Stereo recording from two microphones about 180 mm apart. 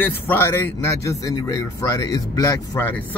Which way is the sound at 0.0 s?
10° left (ahead or behind).